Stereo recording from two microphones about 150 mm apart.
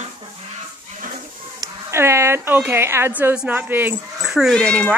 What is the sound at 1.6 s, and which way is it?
Speech, 20° right (ahead or behind).